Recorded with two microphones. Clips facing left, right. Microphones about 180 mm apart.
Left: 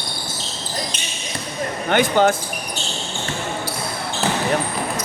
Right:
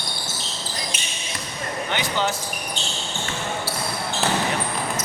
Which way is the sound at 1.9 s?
50° left (ahead or behind).